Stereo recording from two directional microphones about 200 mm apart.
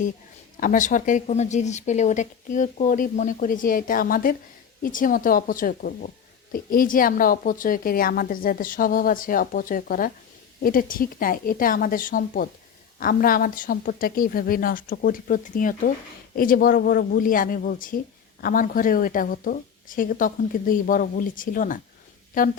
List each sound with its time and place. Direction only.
0.6 s speech: 40° left (ahead or behind)